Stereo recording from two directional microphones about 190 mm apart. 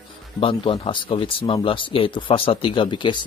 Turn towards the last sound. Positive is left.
turn(degrees=25)  # may be behind; listen again after turning